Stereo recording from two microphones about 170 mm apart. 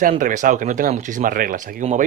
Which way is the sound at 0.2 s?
50° right (ahead or behind).